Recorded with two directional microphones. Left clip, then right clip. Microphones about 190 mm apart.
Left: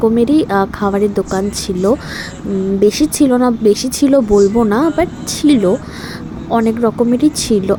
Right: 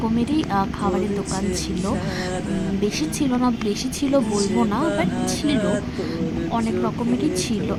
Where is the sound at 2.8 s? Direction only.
30° left (ahead or behind).